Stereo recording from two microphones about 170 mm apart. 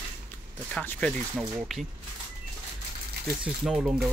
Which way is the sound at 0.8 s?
5° left (ahead or behind).